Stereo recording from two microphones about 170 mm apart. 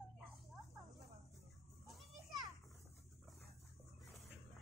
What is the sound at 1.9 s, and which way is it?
Children playing, centre (ahead or behind).